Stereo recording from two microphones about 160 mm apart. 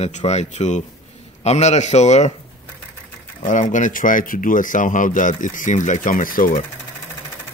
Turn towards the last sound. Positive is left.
turn(degrees=60)  # may be behind; listen again after turning